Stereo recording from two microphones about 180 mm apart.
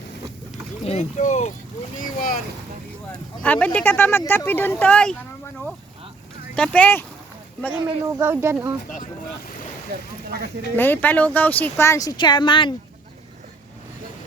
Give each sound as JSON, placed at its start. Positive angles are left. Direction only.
{"t": 0.9, "sound": "speech", "side_deg": 40}
{"t": 3.1, "sound": "speech", "side_deg": 10}
{"t": 6.6, "sound": "speech", "side_deg": 10}
{"t": 7.7, "sound": "speech", "side_deg": -15}
{"t": 10.8, "sound": "speech", "side_deg": 10}